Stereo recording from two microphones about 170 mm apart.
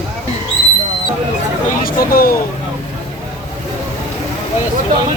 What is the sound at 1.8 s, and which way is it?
Speech, 55° left (ahead or behind).